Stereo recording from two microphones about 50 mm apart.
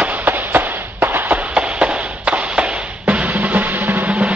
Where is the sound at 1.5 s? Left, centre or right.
Right.